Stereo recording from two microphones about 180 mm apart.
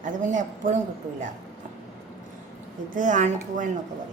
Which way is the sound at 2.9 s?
45° right (ahead or behind).